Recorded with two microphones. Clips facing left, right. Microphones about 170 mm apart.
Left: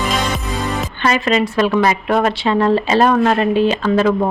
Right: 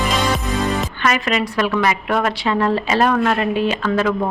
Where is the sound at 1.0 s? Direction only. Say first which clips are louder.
Left 5 dB; 30° left (ahead or behind).